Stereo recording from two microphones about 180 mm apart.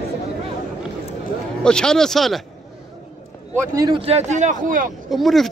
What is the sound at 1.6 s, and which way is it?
Speech, 5° left (ahead or behind).